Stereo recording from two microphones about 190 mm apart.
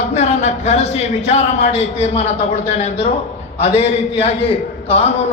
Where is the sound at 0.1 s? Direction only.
35° left (ahead or behind).